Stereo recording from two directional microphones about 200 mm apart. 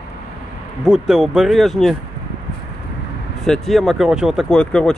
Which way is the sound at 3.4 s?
Centre (ahead or behind).